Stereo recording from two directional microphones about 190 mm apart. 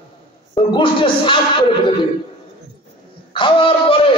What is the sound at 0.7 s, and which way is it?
Speech, 25° left (ahead or behind).